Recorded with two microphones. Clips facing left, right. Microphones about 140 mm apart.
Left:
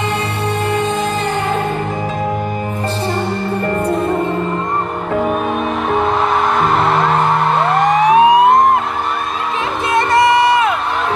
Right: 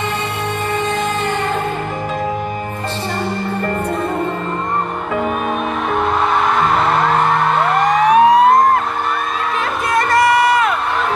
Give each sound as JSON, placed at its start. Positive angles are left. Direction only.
{"t": 0.7, "sound": "music", "side_deg": 0}
{"t": 8.1, "sound": "emergency vehicle", "side_deg": 20}
{"t": 9.9, "sound": "music", "side_deg": 25}